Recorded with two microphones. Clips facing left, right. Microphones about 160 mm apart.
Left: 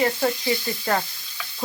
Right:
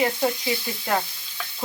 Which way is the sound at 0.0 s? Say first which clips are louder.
Left 1 dB; 15° right (ahead or behind).